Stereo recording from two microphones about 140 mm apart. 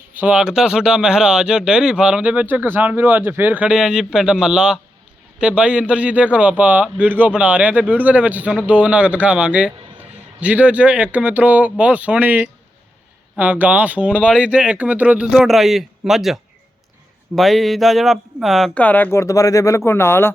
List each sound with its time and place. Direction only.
0.1 s a man's voice: 10° right (ahead or behind)
14.1 s speech: 10° left (ahead or behind)
14.3 s a man's voice: 10° right (ahead or behind); by 20.3 s 15° left (ahead or behind)